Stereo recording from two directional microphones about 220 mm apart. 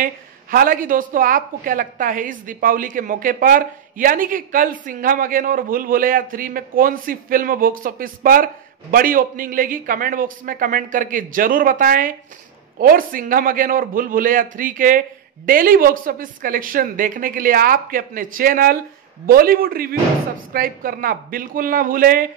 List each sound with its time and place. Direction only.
0.0 s a woman's voice: 40° right (ahead or behind)